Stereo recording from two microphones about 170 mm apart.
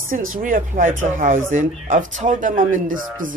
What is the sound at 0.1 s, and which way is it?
Speech, 55° right (ahead or behind).